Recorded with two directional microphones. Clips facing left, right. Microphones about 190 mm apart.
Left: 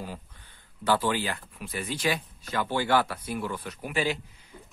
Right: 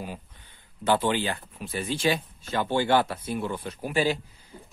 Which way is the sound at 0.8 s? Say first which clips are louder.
Right 2 dB; 20° right (ahead or behind).